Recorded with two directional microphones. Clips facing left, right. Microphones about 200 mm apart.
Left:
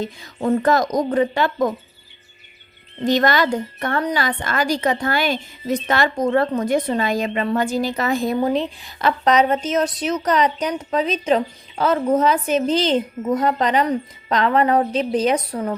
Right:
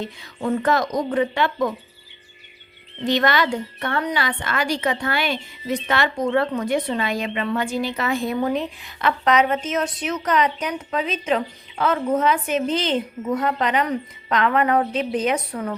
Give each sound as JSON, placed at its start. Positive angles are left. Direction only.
{"t": 0.0, "sound": "a woman's voice", "side_deg": 40}
{"t": 3.0, "sound": "a woman's voice", "side_deg": 40}
{"t": 8.4, "sound": "a woman's voice", "side_deg": 30}